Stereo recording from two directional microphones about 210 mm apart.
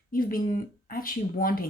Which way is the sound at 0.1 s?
40° left (ahead or behind).